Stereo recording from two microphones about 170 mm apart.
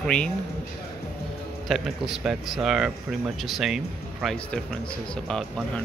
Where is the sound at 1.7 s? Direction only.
Centre (ahead or behind).